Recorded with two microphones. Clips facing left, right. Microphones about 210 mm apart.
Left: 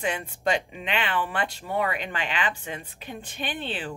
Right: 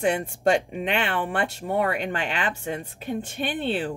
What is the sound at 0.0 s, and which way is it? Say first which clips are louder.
Speech: right 6 dB; 45° right (ahead or behind).